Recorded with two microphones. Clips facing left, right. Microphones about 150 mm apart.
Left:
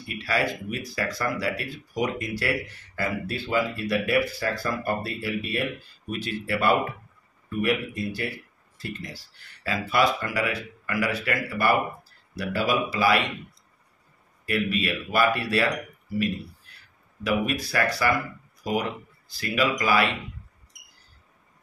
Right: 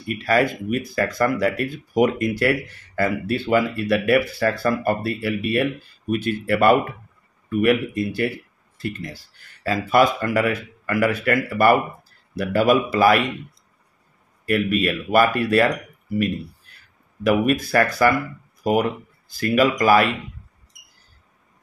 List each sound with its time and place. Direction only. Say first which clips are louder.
0.2 s speech: right 7 dB; 50° right (ahead or behind)
8.7 s speech: right 6 dB; 50° right (ahead or behind)
14.4 s speech: right 6 dB; 50° right (ahead or behind)
17.2 s speech: right 7 dB; 50° right (ahead or behind)